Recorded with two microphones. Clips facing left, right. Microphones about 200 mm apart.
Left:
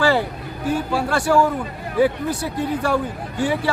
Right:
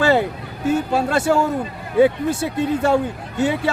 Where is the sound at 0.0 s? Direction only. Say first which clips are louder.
Right 2 dB; 25° right (ahead or behind).